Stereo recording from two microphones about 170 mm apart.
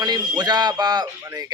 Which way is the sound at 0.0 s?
25° right (ahead or behind).